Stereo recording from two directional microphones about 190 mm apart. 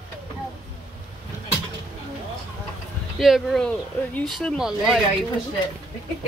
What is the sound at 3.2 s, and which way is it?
Speech, centre (ahead or behind).